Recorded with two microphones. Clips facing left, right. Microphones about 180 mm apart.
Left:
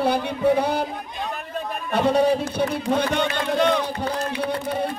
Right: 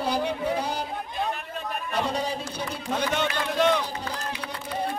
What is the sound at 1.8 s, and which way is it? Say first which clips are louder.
Speech: left 10 dB; 60° left (ahead or behind).